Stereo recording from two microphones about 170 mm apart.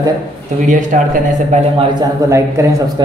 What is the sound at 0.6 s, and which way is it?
Speech, 50° right (ahead or behind).